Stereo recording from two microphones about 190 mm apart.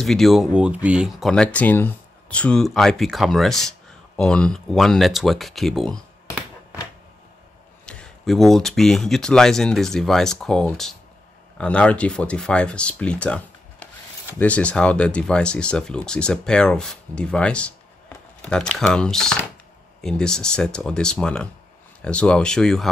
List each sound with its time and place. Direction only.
0.0 s speech: centre (ahead or behind)
7.8 s speech: 5° left (ahead or behind)